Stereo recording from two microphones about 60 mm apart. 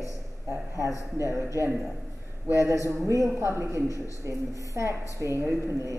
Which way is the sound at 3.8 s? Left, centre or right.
Left.